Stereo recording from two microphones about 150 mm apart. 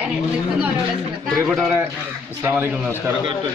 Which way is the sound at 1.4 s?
5° right (ahead or behind).